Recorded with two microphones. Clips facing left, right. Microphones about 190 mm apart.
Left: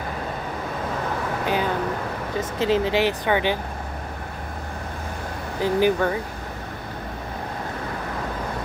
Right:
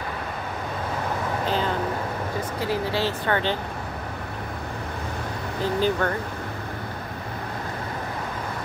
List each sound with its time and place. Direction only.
2.6 s speech: 20° left (ahead or behind)
5.6 s speech: 15° left (ahead or behind)